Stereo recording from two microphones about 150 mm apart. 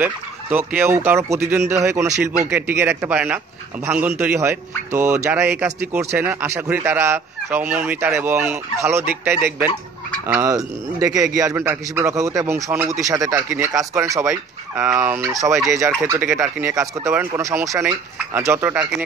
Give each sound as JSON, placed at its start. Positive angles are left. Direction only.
{"t": 0.0, "sound": "a man's voice", "side_deg": -10}